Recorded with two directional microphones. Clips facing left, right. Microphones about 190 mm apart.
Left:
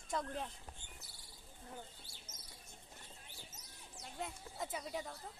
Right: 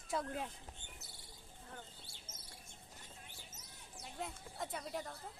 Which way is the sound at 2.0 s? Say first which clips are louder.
Right 1 dB; 30° right (ahead or behind).